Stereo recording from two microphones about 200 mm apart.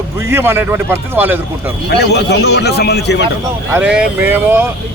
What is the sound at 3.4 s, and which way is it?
Speech, 10° right (ahead or behind).